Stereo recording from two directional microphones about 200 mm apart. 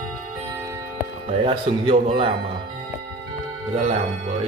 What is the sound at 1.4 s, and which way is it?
Speech, 25° right (ahead or behind).